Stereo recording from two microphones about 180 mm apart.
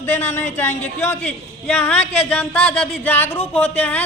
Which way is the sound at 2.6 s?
35° left (ahead or behind).